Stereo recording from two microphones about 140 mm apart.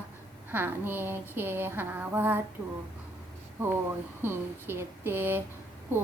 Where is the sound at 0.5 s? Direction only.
15° right (ahead or behind).